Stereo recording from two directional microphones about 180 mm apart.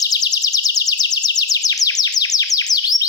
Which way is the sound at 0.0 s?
20° left (ahead or behind).